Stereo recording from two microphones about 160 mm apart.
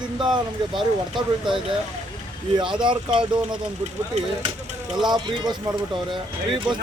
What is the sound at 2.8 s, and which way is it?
Speech, 30° right (ahead or behind).